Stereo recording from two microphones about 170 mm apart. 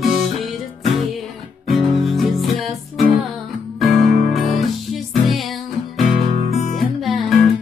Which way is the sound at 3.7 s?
Centre (ahead or behind).